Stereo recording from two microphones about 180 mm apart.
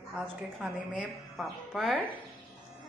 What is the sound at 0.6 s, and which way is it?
A woman's voice, 5° right (ahead or behind).